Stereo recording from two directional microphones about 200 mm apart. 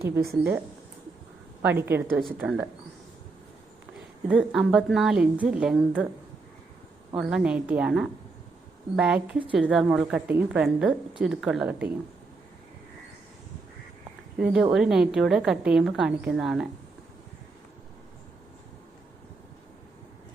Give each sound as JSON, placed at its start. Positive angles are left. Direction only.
{"t": 0.0, "sound": "a woman's voice", "side_deg": -50}
{"t": 1.6, "sound": "a woman's voice", "side_deg": -10}
{"t": 4.3, "sound": "a woman's voice", "side_deg": -5}
{"t": 7.2, "sound": "a woman's voice", "side_deg": -5}
{"t": 14.3, "sound": "a woman's voice", "side_deg": -5}